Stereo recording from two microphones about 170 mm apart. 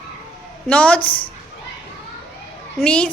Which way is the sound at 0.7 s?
5° left (ahead or behind).